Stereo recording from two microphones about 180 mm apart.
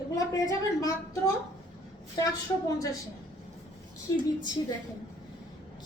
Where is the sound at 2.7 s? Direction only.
20° left (ahead or behind).